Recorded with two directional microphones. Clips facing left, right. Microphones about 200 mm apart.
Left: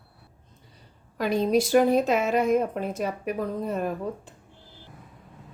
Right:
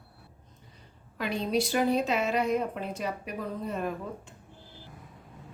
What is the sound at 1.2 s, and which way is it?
A woman's voice, 45° left (ahead or behind).